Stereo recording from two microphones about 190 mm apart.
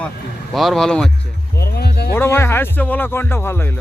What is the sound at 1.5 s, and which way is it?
Music, 55° left (ahead or behind).